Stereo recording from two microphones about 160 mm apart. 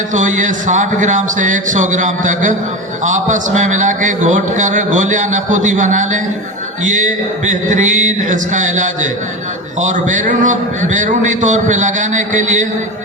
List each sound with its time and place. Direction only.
0.1 s a man's voice: 50° right (ahead or behind)
7.7 s a man's voice: 50° right (ahead or behind)